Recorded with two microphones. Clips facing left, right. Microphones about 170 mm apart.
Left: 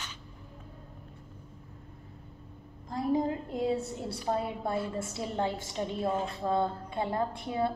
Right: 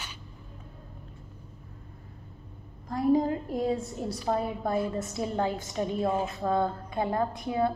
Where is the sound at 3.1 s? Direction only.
20° left (ahead or behind).